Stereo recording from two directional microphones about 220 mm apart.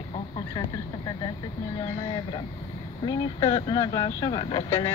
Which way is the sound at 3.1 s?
20° left (ahead or behind).